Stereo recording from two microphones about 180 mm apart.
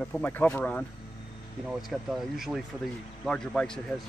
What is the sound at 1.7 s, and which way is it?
Speech, centre (ahead or behind).